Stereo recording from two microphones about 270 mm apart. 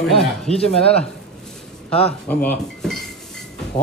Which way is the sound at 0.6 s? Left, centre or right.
Left.